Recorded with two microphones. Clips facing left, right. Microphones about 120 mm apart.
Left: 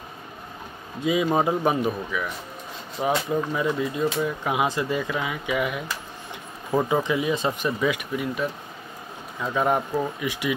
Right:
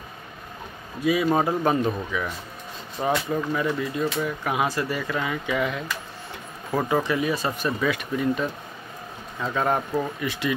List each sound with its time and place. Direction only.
1.0 s speech: 20° left (ahead or behind)